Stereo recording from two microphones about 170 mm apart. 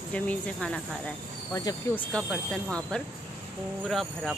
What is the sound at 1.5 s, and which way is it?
Speech, 25° left (ahead or behind).